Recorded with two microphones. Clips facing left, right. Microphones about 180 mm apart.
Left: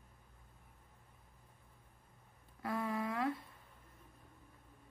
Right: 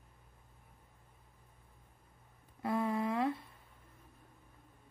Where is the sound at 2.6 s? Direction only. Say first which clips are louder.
Right 5 dB; 25° right (ahead or behind).